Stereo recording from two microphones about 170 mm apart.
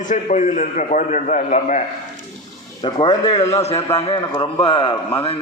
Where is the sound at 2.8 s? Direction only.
25° left (ahead or behind).